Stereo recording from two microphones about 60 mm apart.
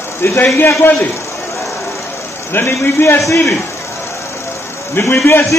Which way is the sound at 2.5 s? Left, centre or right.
Left.